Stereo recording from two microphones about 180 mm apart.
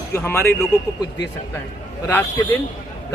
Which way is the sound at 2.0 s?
15° left (ahead or behind).